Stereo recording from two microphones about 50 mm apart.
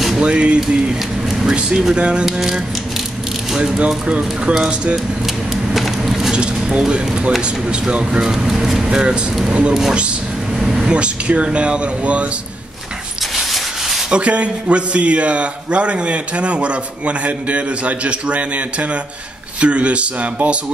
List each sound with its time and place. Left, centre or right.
0.2 s speech: right
2.2 s speech: centre
5.2 s vehicle: centre
6.3 s speech: right
8.8 s a man's voice: centre
10.6 s a sound: centre
10.9 s a man's voice: right
13.4 s rub: centre
14.1 s a man's voice: right